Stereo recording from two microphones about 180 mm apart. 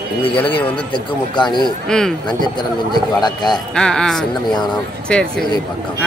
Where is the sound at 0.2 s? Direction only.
30° left (ahead or behind).